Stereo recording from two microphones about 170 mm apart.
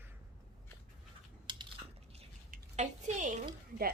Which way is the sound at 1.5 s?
25° right (ahead or behind).